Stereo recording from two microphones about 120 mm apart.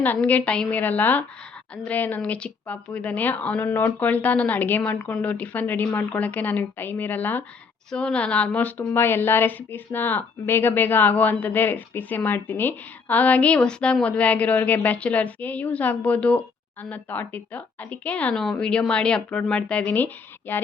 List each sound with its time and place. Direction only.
0.0 s a woman's voice: 15° left (ahead or behind)